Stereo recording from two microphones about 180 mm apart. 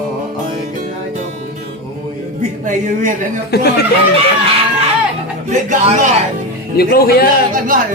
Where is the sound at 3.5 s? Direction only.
60° left (ahead or behind).